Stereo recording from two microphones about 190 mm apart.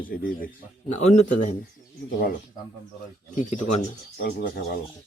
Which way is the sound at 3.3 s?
40° left (ahead or behind).